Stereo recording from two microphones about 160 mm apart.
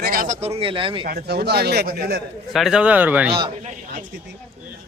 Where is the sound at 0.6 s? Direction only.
35° right (ahead or behind).